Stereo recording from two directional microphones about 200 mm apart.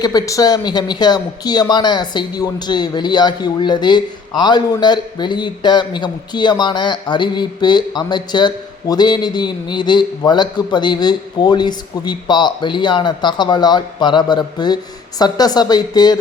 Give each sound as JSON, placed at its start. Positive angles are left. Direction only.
{"t": 0.0, "sound": "a man's voice", "side_deg": 20}